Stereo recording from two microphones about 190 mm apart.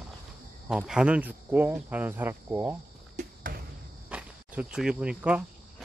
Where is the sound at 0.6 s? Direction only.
5° right (ahead or behind).